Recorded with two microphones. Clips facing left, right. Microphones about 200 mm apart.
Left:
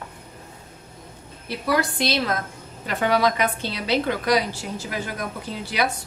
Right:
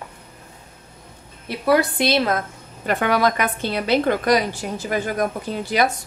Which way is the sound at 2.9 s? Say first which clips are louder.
Right 2 dB; 50° right (ahead or behind).